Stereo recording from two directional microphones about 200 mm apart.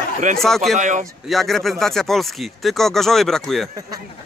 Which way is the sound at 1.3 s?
Centre (ahead or behind).